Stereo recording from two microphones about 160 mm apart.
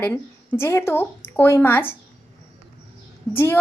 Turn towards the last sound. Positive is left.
turn(degrees=15)  # may be behind; listen again after turning